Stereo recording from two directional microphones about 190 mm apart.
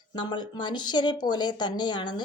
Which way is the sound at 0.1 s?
25° left (ahead or behind).